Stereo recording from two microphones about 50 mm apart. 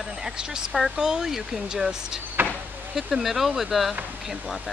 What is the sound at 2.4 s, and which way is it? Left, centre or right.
Insect, right.